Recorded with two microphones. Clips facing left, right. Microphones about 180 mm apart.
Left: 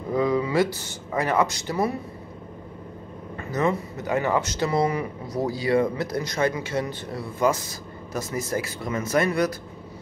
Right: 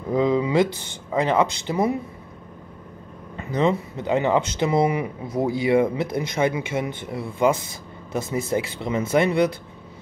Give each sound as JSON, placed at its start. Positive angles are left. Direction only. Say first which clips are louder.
{"t": 0.1, "sound": "speech", "louder": "right 3 dB", "side_deg": -20}
{"t": 3.3, "sound": "speech", "louder": "right 3 dB", "side_deg": -20}